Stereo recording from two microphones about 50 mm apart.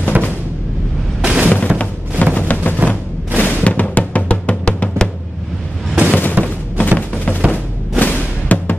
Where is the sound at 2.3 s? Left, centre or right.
Left.